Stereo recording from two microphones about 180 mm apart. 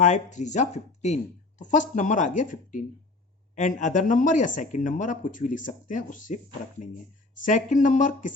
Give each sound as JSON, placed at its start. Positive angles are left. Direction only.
{"t": 0.0, "sound": "speech", "side_deg": 40}